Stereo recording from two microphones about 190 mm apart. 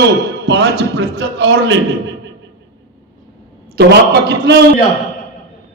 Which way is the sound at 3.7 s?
60° right (ahead or behind).